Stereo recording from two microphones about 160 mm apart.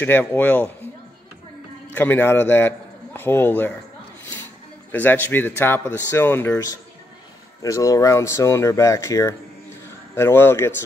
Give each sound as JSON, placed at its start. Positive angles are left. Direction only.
{"t": 0.0, "sound": "speech", "side_deg": 10}
{"t": 2.0, "sound": "a man's voice", "side_deg": 10}
{"t": 4.9, "sound": "speech", "side_deg": 10}